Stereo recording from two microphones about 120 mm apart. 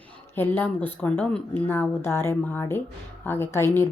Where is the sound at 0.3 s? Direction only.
15° left (ahead or behind).